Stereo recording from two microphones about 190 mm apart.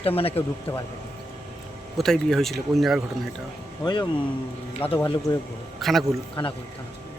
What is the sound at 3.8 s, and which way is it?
Speech, 20° left (ahead or behind).